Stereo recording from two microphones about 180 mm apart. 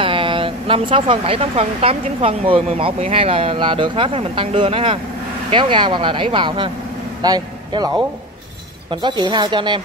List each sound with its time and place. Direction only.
0.0 s speech: 30° right (ahead or behind)